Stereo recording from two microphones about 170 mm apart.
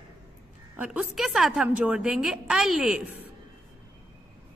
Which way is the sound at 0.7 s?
5° right (ahead or behind).